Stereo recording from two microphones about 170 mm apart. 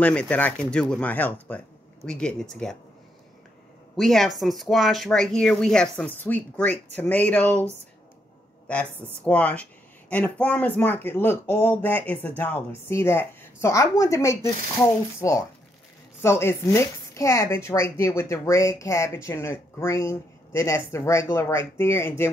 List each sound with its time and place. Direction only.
0.0 s speech: 5° left (ahead or behind)
3.9 s speech: centre (ahead or behind)
8.6 s speech: 5° left (ahead or behind)